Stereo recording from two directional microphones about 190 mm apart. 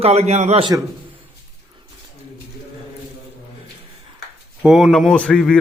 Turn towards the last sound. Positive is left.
turn(degrees=5)  # may be behind; listen again after turning